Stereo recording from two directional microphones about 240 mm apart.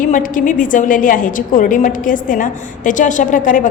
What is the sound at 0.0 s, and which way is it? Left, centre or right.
A woman's voice, left.